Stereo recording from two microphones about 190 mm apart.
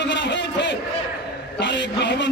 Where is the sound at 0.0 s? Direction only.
65° left (ahead or behind).